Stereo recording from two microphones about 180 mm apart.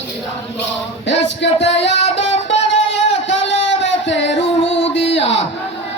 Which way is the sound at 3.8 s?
85° left.